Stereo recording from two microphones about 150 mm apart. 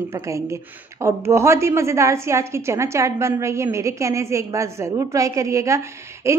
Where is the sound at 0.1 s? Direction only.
20° right (ahead or behind).